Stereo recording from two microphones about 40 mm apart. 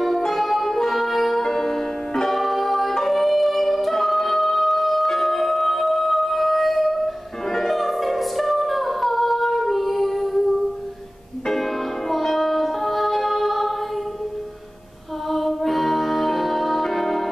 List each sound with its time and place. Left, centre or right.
0.0 s music: centre
11.4 s music: centre
15.2 s music: centre